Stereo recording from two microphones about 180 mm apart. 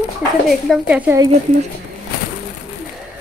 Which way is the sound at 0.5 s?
5° right (ahead or behind).